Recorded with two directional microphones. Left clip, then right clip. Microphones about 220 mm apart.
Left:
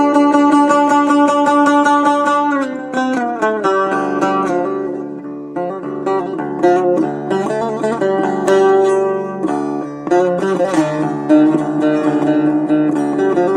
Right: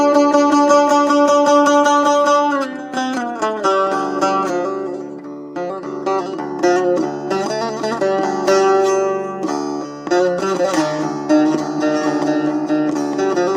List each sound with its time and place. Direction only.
0.0 s music: 35° right (ahead or behind)
6.1 s music: 35° right (ahead or behind)